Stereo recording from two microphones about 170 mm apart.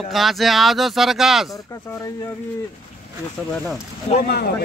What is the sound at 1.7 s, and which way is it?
Speech, 15° left (ahead or behind).